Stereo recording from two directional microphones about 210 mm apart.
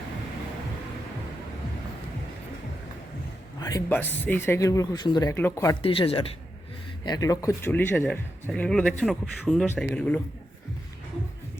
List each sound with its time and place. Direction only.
3.6 s a man's voice: 15° left (ahead or behind)
5.8 s a man's voice: 25° left (ahead or behind); by 10.2 s 5° left (ahead or behind)